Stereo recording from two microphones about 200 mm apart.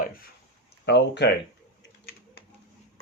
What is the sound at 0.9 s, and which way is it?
Speech, 55° left (ahead or behind).